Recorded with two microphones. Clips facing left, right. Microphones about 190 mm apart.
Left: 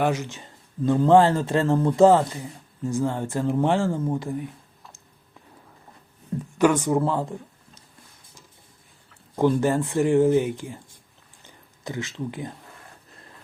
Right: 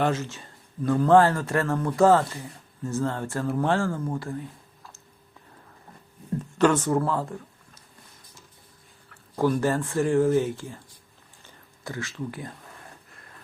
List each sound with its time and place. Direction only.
0.0 s speech: 15° left (ahead or behind)
6.4 s speech: 10° left (ahead or behind)
9.0 s speech: 20° left (ahead or behind)
11.4 s a sound: 20° left (ahead or behind)